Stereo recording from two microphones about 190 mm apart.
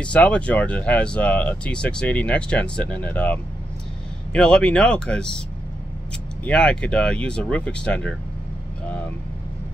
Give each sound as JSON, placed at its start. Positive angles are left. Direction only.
{"t": 0.0, "sound": "speech", "side_deg": 5}
{"t": 6.4, "sound": "speech", "side_deg": 5}